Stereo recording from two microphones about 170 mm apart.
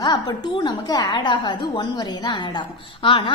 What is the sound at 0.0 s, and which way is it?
A woman's voice, 25° left (ahead or behind).